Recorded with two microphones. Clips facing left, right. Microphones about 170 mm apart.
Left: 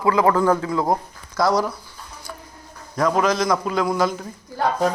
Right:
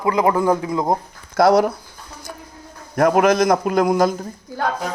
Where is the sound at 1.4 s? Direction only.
60° right (ahead or behind).